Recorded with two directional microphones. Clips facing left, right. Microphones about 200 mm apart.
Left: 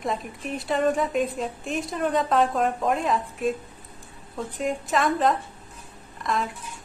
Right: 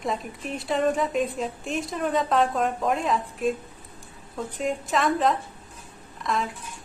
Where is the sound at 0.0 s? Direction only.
Centre (ahead or behind).